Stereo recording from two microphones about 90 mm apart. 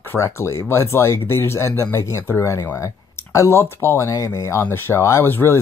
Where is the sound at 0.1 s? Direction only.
30° left (ahead or behind).